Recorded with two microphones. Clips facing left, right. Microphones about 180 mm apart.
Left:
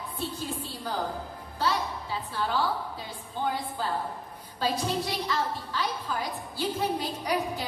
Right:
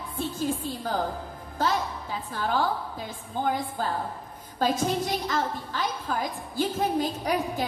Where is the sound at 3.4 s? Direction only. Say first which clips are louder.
Right 2 dB; 45° right (ahead or behind).